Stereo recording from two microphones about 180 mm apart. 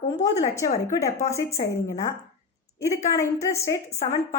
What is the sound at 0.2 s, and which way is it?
A woman's voice, 15° left (ahead or behind).